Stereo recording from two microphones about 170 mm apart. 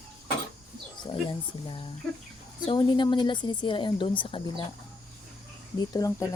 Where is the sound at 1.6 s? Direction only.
30° left (ahead or behind).